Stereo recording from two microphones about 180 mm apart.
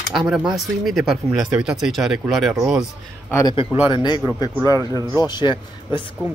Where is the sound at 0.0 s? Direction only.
Centre (ahead or behind).